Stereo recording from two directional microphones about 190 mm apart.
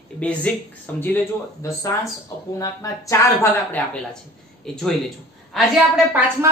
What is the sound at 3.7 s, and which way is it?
A man's voice, 5° left (ahead or behind).